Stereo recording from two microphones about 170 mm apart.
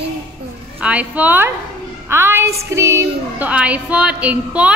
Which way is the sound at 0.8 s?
10° right (ahead or behind).